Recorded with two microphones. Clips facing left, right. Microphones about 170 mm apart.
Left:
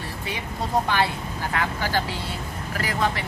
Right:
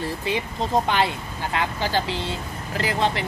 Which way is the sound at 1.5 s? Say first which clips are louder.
Right 2 dB; 20° right (ahead or behind).